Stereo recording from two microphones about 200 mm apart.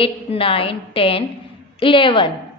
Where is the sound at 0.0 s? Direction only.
25° left (ahead or behind).